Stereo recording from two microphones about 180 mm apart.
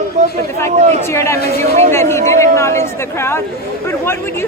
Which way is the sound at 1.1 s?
15° left (ahead or behind).